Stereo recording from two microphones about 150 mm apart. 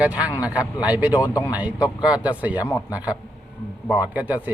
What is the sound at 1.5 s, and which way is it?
Speech, 10° right (ahead or behind).